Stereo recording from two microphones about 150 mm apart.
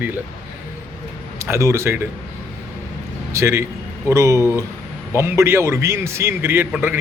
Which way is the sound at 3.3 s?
15° right (ahead or behind).